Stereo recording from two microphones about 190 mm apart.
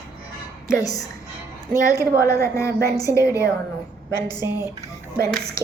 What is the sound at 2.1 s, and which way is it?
Speech, 15° left (ahead or behind).